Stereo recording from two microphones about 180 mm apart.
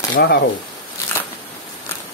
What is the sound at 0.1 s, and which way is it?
Speech, 65° left (ahead or behind).